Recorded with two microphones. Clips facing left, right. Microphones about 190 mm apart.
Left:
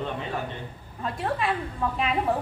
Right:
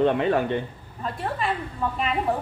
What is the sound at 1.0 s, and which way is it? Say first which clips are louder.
Speech: even; centre (ahead or behind).